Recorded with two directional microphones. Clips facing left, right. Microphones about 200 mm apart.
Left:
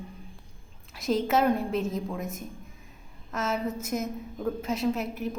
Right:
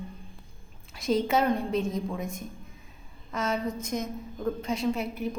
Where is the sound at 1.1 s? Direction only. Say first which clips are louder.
Even; centre (ahead or behind).